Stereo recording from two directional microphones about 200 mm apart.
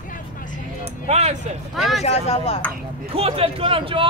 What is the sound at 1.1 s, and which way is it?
Speech, 35° right (ahead or behind).